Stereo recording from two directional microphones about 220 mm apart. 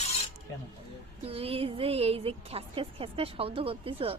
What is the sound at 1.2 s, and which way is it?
A woman's voice, 25° right (ahead or behind).